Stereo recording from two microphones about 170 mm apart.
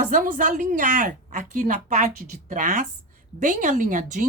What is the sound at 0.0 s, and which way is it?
A woman's voice, 50° right (ahead or behind).